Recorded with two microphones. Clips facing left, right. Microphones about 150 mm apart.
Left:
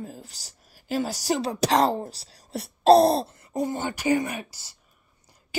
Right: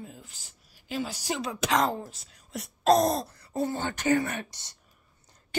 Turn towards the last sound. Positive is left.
turn(degrees=5)  # may be behind; listen again after turning